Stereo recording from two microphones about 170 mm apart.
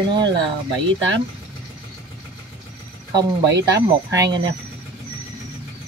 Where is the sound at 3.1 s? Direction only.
90° right.